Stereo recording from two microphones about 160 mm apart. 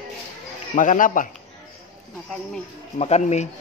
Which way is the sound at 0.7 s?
55° left (ahead or behind).